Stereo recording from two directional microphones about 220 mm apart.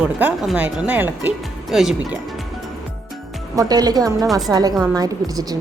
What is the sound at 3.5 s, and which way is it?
A woman's voice, 15° right (ahead or behind).